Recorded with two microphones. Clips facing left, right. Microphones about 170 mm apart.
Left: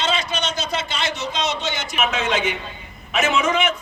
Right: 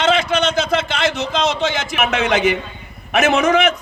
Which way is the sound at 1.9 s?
65° right (ahead or behind).